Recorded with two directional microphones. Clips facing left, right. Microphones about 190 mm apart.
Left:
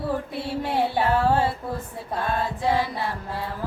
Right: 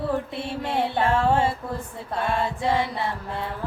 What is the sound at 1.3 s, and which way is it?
Female singing, 25° right (ahead or behind).